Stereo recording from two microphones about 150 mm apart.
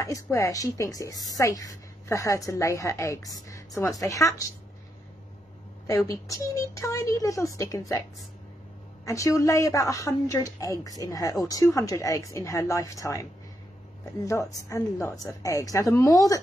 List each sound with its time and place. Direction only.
0.0 s a woman's voice: 20° left (ahead or behind)
5.9 s a woman's voice: 20° left (ahead or behind)
9.0 s a woman's voice: 20° left (ahead or behind)